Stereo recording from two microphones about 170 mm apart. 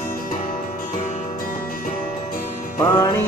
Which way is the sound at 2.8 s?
20° left (ahead or behind).